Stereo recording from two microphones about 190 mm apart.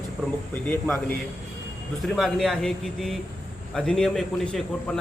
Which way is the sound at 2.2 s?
Centre (ahead or behind).